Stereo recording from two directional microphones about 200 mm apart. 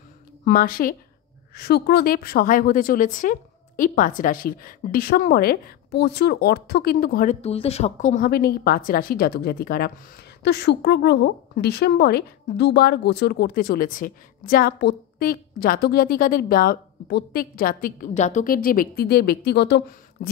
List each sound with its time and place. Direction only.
0.5 s a woman's voice: 45° left (ahead or behind)
7.4 s a woman's voice: 30° left (ahead or behind); by 20.2 s 60° left (ahead or behind)